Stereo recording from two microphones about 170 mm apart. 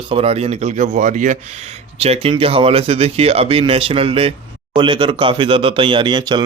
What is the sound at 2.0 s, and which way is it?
Speech, 35° right (ahead or behind).